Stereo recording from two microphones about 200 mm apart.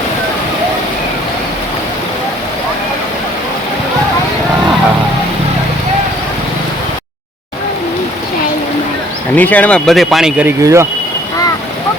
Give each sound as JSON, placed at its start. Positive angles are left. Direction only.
{"t": 9.3, "sound": "speech", "side_deg": 10}
{"t": 10.6, "sound": "speech", "side_deg": -15}